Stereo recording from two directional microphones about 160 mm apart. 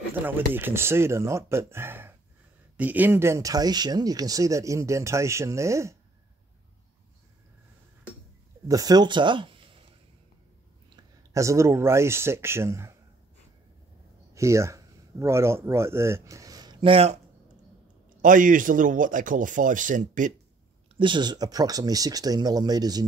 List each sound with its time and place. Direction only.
0.1 s speech: 10° right (ahead or behind)
8.6 s speech: 25° right (ahead or behind)
11.3 s speech: 20° right (ahead or behind)
14.3 s speech: 20° right (ahead or behind); by 17.2 s 35° right (ahead or behind)
18.2 s speech: 55° right (ahead or behind)
20.9 s speech: 30° right (ahead or behind)